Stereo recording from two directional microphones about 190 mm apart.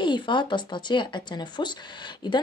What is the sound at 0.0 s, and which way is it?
Speech, 25° left (ahead or behind).